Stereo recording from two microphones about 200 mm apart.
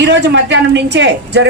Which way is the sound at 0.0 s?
60° right (ahead or behind).